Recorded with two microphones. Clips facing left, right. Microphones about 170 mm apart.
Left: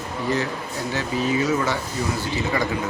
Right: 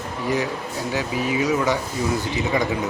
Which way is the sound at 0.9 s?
10° right (ahead or behind).